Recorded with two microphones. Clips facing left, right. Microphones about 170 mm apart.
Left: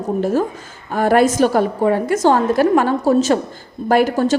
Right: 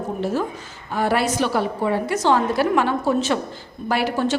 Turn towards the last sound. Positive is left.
turn(degrees=45)  # may be behind; listen again after turning